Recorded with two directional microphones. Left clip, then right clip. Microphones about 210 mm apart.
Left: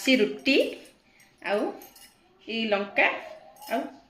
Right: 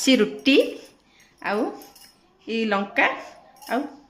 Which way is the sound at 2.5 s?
50° right (ahead or behind).